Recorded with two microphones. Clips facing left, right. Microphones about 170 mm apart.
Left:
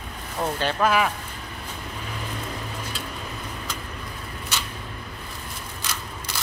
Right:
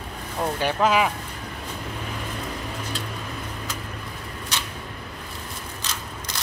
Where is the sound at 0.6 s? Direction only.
15° right (ahead or behind).